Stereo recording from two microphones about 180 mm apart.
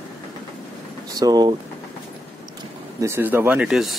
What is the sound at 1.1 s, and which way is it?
Speech, 20° right (ahead or behind).